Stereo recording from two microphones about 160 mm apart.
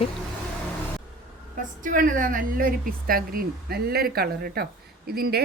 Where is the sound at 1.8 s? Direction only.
55° right (ahead or behind); by 5.4 s 75° right (ahead or behind).